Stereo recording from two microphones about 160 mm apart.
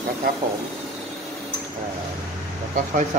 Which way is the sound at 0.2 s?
70° right (ahead or behind).